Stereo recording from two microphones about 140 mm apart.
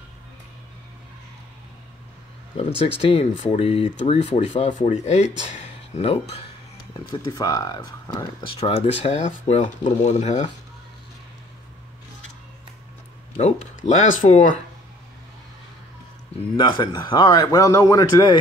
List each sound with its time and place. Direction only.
3.1 s speech: 40° left (ahead or behind)
4.6 s speech: 60° left (ahead or behind)
7.2 s speech: 25° left (ahead or behind)
8.5 s speech: 45° left (ahead or behind)
13.4 s speech: 55° left (ahead or behind)
16.5 s speech: 35° left (ahead or behind)